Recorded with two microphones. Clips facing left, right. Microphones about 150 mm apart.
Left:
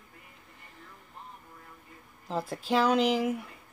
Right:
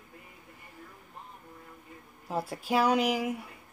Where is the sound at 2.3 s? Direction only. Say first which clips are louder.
Left 1 dB; 10° right (ahead or behind).